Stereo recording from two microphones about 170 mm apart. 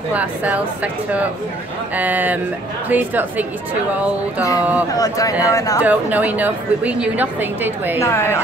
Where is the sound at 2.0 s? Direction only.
10° right (ahead or behind).